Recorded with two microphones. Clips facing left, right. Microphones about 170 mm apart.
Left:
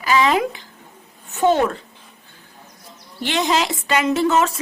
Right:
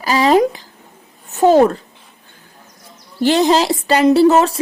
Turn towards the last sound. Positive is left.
turn(degrees=-35)  # may be behind; listen again after turning